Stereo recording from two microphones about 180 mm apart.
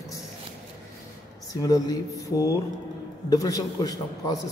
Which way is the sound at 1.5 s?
20° left (ahead or behind).